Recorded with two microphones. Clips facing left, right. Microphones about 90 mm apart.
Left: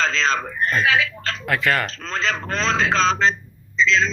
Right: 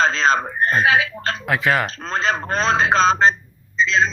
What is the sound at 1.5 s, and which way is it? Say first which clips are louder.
Speech: right 1 dB; 5° right (ahead or behind).